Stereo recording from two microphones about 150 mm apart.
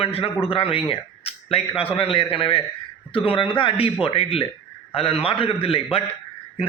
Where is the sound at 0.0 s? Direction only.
40° left (ahead or behind).